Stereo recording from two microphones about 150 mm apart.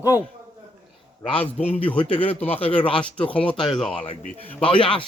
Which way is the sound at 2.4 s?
10° left (ahead or behind).